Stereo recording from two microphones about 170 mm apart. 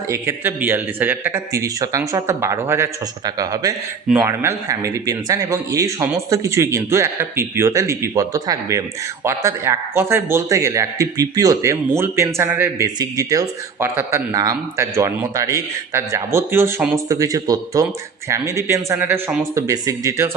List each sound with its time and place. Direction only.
0.1 s a man's voice: 15° right (ahead or behind)